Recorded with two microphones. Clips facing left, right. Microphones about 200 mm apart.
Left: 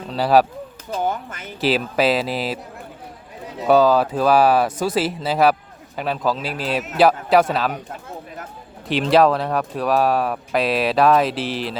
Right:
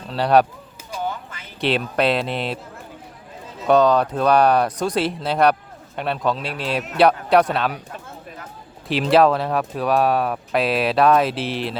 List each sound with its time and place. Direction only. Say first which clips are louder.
0.1 s speech: even; centre (ahead or behind)
1.0 s a sound: left 3 dB; 50° left (ahead or behind)
1.6 s speech: left 1 dB; 5° left (ahead or behind)
3.7 s speech: left 1 dB; 5° left (ahead or behind)
8.9 s speech: even; centre (ahead or behind)